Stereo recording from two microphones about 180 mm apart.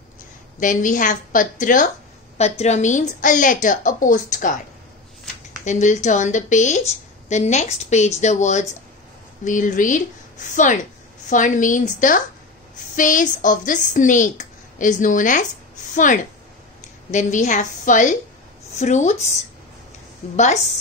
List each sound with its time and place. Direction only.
0.6 s speech: 45° left (ahead or behind)
5.7 s a woman's voice: 40° left (ahead or behind)
20.3 s a woman's voice: 40° left (ahead or behind)